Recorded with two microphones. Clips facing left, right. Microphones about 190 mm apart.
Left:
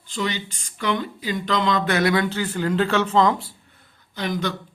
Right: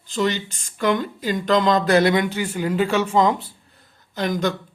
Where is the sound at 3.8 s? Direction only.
45° right (ahead or behind).